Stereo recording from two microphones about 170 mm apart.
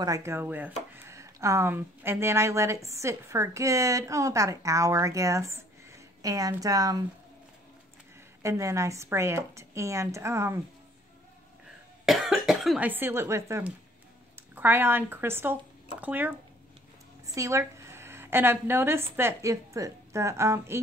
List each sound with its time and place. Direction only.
0.0 s a woman's voice: 20° right (ahead or behind)
8.4 s a woman's voice: 20° right (ahead or behind)
12.1 s a woman's voice: centre (ahead or behind)